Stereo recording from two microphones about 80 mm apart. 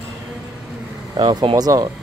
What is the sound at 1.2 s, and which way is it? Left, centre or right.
Speech, right.